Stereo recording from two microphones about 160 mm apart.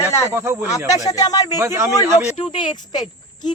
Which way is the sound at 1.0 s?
20° left (ahead or behind).